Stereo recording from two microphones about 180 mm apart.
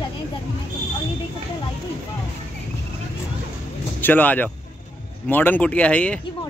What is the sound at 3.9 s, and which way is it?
Speech, 10° left (ahead or behind).